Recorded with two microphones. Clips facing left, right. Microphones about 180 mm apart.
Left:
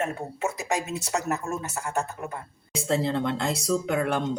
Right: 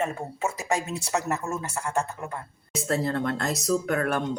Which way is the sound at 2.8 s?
20° left (ahead or behind).